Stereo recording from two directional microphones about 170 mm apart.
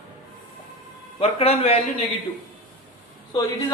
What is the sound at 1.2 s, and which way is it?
Speech, 35° left (ahead or behind).